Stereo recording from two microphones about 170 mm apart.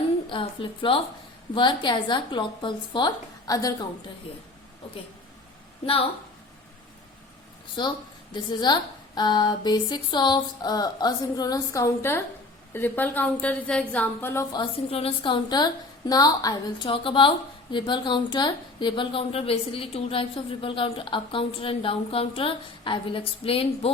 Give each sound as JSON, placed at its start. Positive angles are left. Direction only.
{"t": 0.3, "sound": "a woman's voice", "side_deg": 30}
{"t": 5.8, "sound": "a woman's voice", "side_deg": 35}
{"t": 7.8, "sound": "a woman's voice", "side_deg": 25}
{"t": 14.5, "sound": "a woman's voice", "side_deg": 30}